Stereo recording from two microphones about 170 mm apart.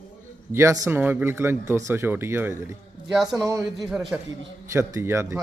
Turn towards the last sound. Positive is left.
turn(degrees=-15)  # may be behind; listen again after turning